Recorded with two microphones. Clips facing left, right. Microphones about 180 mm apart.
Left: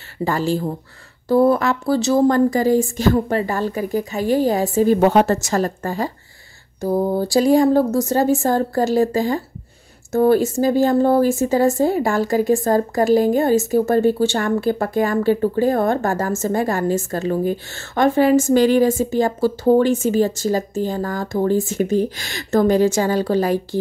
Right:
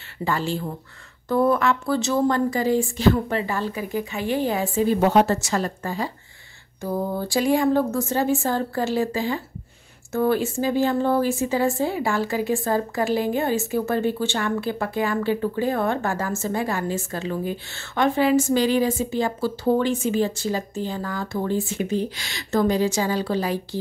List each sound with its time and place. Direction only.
0.2 s speech: 40° left (ahead or behind)